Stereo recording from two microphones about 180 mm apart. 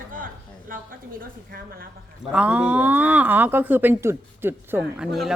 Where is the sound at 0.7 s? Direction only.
50° right (ahead or behind).